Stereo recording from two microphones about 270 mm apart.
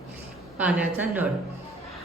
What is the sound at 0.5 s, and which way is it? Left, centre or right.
Speech, centre.